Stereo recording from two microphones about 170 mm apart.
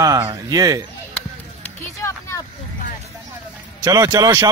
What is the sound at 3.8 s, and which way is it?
Speech, 20° right (ahead or behind).